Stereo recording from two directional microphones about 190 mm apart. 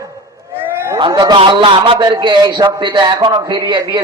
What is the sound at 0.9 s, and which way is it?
A man's voice, 25° right (ahead or behind).